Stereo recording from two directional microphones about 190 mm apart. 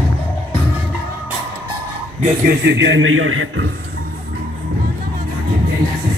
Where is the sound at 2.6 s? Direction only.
65° right (ahead or behind); by 3.7 s 90° right.